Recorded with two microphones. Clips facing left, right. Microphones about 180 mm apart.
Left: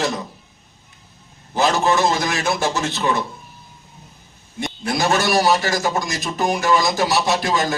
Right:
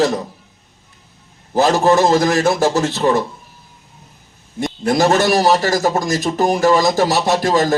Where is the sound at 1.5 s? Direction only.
40° right (ahead or behind).